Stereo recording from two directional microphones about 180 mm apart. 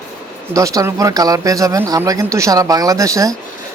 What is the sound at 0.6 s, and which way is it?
Speech, 20° right (ahead or behind).